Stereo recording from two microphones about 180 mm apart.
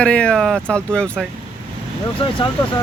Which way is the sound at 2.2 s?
30° left (ahead or behind).